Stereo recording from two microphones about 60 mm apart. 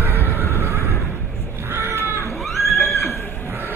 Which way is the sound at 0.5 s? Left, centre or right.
Right.